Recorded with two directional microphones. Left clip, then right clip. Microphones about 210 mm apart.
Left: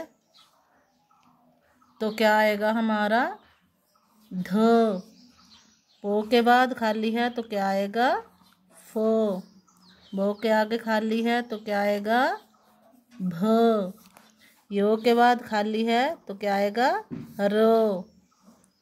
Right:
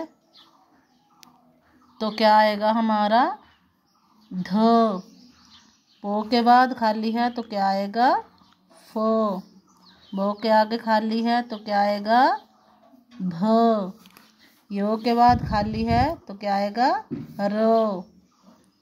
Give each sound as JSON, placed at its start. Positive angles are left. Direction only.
{"t": 2.0, "sound": "speech", "side_deg": 5}
{"t": 4.4, "sound": "speech", "side_deg": 10}